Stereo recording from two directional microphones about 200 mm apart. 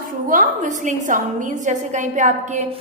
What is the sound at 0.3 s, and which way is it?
A woman's voice, 40° right (ahead or behind).